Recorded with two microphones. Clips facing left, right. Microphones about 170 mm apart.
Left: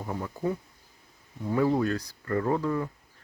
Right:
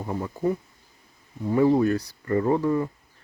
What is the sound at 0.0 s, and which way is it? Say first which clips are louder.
Speech: right 4 dB; 15° right (ahead or behind).